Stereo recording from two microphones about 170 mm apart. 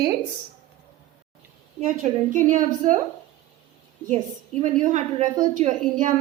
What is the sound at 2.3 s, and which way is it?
Speech, 50° right (ahead or behind).